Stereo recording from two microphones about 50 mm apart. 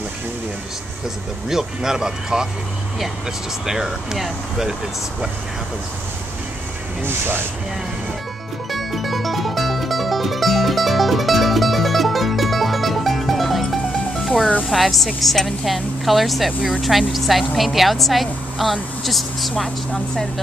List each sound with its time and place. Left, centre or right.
1.5 s speech: centre
3.6 s speech: centre
7.0 s speech: right
8.7 s music: centre
14.7 s speech: centre